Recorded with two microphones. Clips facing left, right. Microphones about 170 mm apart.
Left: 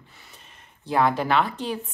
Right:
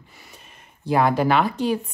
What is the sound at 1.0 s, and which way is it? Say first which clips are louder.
Speech: right 2 dB; 5° right (ahead or behind).